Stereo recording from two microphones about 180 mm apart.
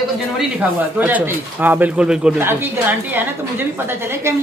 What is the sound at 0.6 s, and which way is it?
Speech, 10° right (ahead or behind).